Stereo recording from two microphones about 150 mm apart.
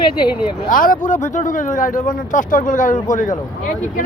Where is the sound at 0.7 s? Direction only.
65° left (ahead or behind).